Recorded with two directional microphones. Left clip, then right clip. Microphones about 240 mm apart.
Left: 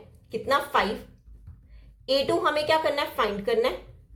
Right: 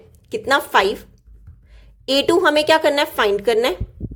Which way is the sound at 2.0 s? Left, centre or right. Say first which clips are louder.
Right 8 dB; right.